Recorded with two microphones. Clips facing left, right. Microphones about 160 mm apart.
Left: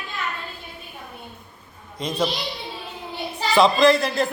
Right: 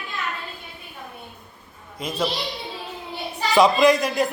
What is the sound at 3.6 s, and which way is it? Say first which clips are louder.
Speech: even; 15° right (ahead or behind).